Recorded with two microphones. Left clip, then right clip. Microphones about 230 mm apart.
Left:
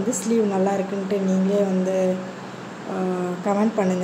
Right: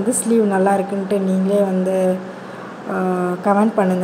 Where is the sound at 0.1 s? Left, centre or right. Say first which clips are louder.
Right 5 dB; centre.